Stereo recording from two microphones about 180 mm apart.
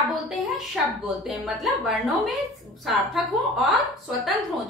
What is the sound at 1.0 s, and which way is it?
A woman's voice, centre (ahead or behind).